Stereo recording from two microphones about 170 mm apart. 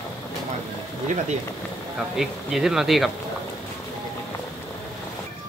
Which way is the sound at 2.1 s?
Centre (ahead or behind).